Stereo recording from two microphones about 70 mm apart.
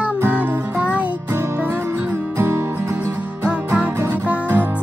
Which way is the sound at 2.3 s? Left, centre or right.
Right.